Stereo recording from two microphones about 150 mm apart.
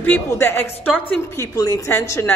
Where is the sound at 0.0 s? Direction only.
15° left (ahead or behind).